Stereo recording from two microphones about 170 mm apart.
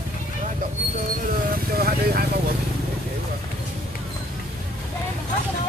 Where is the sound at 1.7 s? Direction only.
65° right (ahead or behind).